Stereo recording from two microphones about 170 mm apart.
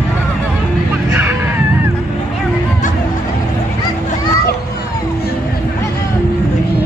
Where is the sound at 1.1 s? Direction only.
15° right (ahead or behind).